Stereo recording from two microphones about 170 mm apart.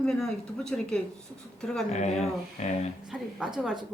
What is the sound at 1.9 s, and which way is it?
Speech, 40° left (ahead or behind).